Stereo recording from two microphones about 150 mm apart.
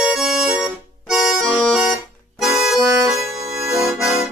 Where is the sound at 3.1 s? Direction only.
20° right (ahead or behind).